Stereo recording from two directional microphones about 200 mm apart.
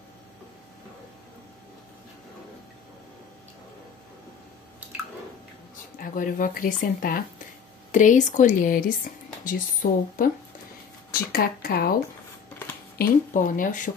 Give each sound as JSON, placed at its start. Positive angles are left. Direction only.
{"t": 5.9, "sound": "speech", "side_deg": 45}
{"t": 11.3, "sound": "speech", "side_deg": 50}